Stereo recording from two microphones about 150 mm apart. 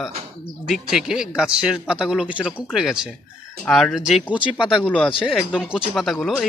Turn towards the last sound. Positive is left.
turn(degrees=0)  # may be behind; listen again after turning